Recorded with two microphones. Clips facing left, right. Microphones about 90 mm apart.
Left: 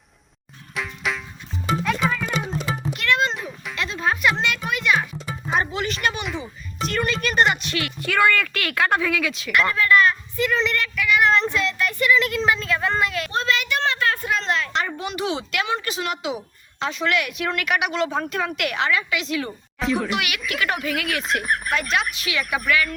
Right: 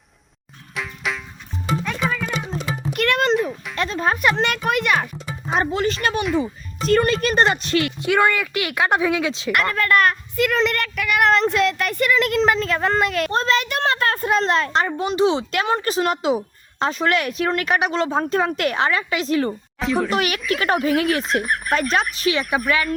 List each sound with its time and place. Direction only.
0.7 s music: centre (ahead or behind)
2.9 s music: 55° right (ahead or behind)
3.3 s a sound: centre (ahead or behind)
3.8 s speech: 40° right (ahead or behind)
5.5 s speech: 35° right (ahead or behind)
8.0 s speech: 20° right (ahead or behind)
9.7 s speech: 50° right (ahead or behind)
13.4 s speech: 35° right (ahead or behind)
15.6 s speech: 40° right (ahead or behind)
19.8 s fowl: centre (ahead or behind)
20.1 s speech: 40° right (ahead or behind)
21.2 s fowl: centre (ahead or behind)
22.1 s speech: 35° right (ahead or behind)